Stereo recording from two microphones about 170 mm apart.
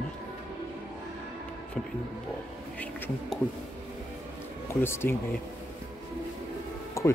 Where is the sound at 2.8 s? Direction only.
5° left (ahead or behind).